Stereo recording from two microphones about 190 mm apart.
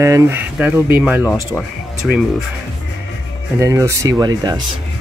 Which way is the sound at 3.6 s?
15° right (ahead or behind).